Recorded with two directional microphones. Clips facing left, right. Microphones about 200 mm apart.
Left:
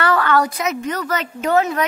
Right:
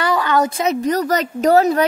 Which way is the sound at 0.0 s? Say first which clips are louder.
Even; 15° right (ahead or behind).